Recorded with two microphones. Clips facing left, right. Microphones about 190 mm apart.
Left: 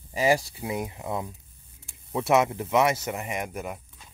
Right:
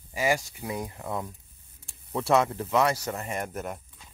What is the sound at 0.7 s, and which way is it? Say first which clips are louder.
Speech: left 2 dB; 20° left (ahead or behind).